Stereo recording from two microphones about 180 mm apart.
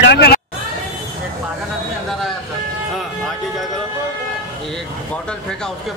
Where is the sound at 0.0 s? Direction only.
70° left (ahead or behind).